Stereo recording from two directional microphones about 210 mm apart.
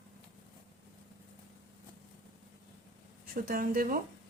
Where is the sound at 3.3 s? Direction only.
45° right (ahead or behind).